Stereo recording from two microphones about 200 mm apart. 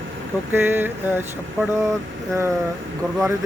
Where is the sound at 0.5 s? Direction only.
10° right (ahead or behind).